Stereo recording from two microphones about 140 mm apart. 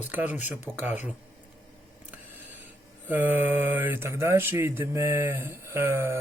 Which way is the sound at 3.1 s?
15° right (ahead or behind).